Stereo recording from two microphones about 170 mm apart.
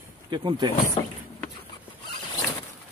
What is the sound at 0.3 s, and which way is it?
Speech, 25° right (ahead or behind).